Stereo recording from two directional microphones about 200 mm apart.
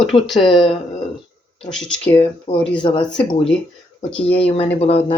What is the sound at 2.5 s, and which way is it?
Speech, 25° left (ahead or behind).